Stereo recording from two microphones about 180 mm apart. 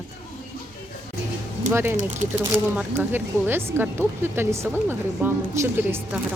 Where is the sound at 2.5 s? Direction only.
10° right (ahead or behind).